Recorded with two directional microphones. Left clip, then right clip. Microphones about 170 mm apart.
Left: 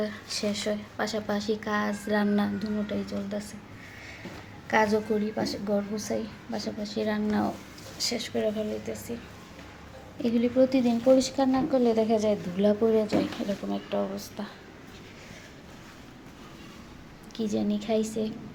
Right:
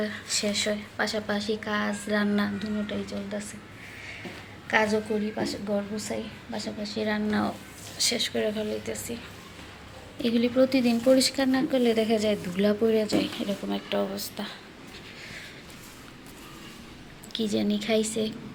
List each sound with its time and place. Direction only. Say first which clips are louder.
0.0 s a woman's voice: right 2 dB; 15° left (ahead or behind)
4.7 s a woman's voice: even; 25° left (ahead or behind); by 9.1 s 5° left (ahead or behind)
10.2 s a woman's voice: right 1 dB; 5° left (ahead or behind)
17.3 s speech: right 2 dB; centre (ahead or behind)